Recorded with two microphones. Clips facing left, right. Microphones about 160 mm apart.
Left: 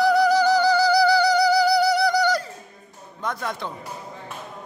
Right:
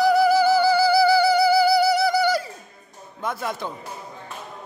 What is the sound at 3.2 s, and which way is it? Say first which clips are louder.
Speech: right 1 dB; 5° right (ahead or behind).